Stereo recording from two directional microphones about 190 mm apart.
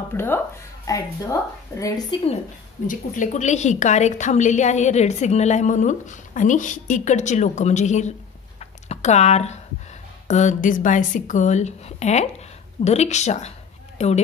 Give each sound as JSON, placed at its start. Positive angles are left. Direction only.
{"t": 0.1, "sound": "a woman's voice", "side_deg": 10}
{"t": 2.9, "sound": "a woman's voice", "side_deg": 40}
{"t": 8.5, "sound": "a sound", "side_deg": 35}
{"t": 10.2, "sound": "a woman's voice", "side_deg": 40}